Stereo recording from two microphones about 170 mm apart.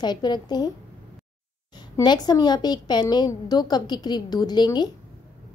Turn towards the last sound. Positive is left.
turn(degrees=25)  # may be behind; listen again after turning